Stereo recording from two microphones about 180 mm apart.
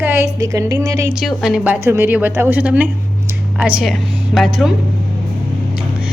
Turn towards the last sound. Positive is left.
turn(degrees=0)  # may be behind; listen again after turning